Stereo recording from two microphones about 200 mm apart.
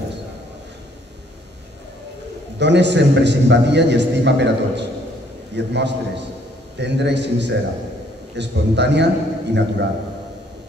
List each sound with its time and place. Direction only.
2.6 s a man's voice: 60° right (ahead or behind)